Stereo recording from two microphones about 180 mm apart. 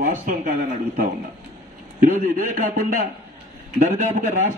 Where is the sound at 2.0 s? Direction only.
50° right (ahead or behind).